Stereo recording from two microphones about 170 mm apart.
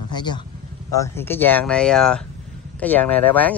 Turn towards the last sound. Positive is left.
turn(degrees=10)  # may be behind; listen again after turning